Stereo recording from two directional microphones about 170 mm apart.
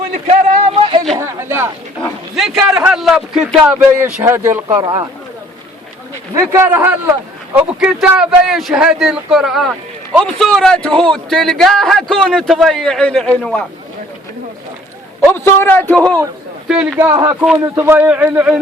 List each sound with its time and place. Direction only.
0.1 s a sound: 40° right (ahead or behind)
1.2 s a sound: 15° right (ahead or behind)
2.3 s a man's voice: centre (ahead or behind)
4.8 s speech: 25° right (ahead or behind)
6.3 s a man's voice: 15° right (ahead or behind); by 13.7 s 5° left (ahead or behind)
15.3 s a man's voice: 15° left (ahead or behind)
16.6 s a man's voice: 5° right (ahead or behind)